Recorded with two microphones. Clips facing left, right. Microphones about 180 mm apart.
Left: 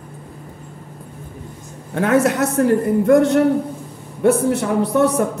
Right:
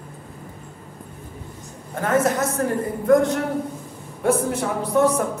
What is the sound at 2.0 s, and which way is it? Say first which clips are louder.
A woman's voice: left 4 dB; 70° left (ahead or behind).